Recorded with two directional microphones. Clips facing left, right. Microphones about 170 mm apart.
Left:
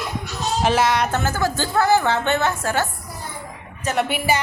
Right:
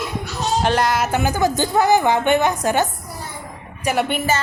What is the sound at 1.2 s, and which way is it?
A woman's voice, 15° right (ahead or behind).